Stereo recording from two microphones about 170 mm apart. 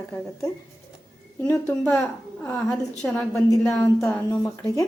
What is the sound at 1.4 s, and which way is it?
Speech, 15° left (ahead or behind).